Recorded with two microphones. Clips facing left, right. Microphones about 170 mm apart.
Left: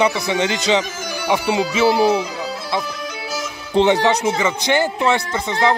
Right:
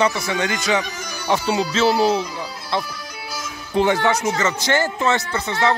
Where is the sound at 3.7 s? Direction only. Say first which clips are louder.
Left 3 dB; 20° left (ahead or behind).